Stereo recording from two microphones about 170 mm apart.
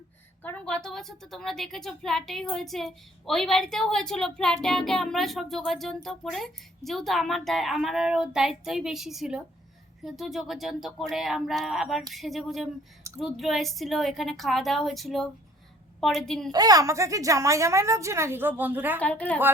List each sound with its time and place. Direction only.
0.4 s a woman's voice: 5° left (ahead or behind)
16.5 s a woman's voice: 20° right (ahead or behind)
18.9 s a woman's voice: 10° left (ahead or behind)